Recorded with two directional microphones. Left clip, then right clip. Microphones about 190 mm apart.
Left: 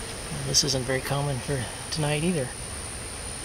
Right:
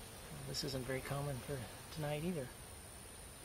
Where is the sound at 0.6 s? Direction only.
5° left (ahead or behind).